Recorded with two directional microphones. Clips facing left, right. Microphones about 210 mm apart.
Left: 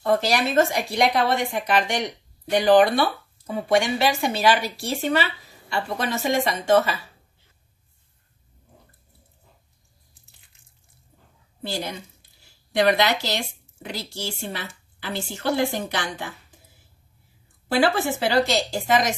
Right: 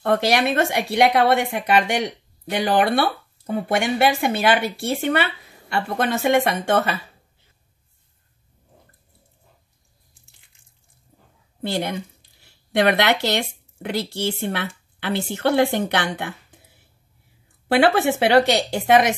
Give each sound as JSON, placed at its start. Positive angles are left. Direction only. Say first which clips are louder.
{"t": 0.0, "sound": "a woman's voice", "louder": "right 2 dB", "side_deg": -65}
{"t": 11.6, "sound": "a woman's voice", "louder": "right 5 dB", "side_deg": -60}
{"t": 17.6, "sound": "a woman's voice", "louder": "right 4 dB", "side_deg": -65}